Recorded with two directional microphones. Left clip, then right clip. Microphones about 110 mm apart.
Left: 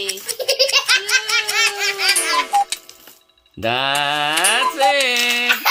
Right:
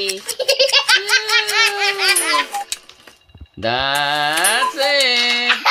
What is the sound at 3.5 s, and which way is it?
Mantra, 10° left (ahead or behind).